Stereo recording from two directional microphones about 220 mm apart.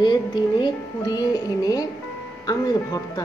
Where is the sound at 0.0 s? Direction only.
20° left (ahead or behind).